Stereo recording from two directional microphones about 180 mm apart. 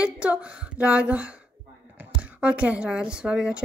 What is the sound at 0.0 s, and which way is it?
A woman's voice, 5° right (ahead or behind).